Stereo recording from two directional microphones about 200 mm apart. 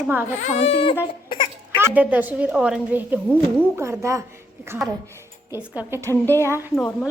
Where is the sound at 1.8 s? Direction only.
5° right (ahead or behind).